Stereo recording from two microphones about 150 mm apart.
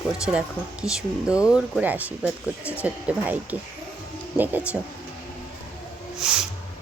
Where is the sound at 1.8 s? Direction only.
10° right (ahead or behind).